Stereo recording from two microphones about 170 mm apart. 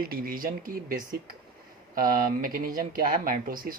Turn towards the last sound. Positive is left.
turn(degrees=-55)  # may be behind; listen again after turning